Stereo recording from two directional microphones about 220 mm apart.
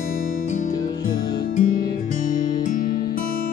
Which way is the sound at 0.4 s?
35° left (ahead or behind).